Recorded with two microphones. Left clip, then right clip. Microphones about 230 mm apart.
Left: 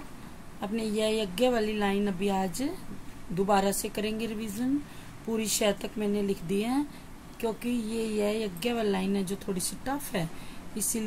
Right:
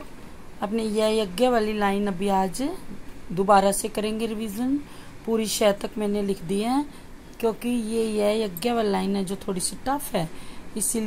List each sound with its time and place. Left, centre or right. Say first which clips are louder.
0.6 s speech: right 6 dB; centre